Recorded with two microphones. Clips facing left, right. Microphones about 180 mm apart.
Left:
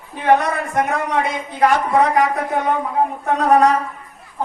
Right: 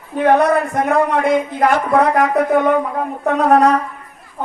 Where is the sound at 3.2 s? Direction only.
60° right (ahead or behind).